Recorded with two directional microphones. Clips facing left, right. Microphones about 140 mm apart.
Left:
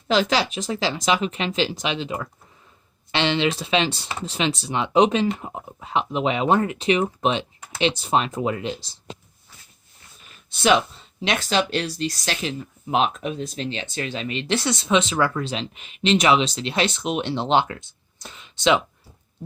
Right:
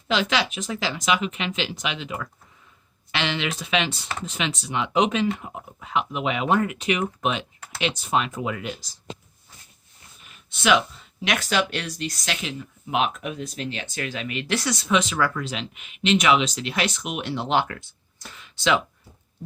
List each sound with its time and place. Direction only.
0.1 s speech: 35° left (ahead or behind)
10.5 s speech: 35° left (ahead or behind)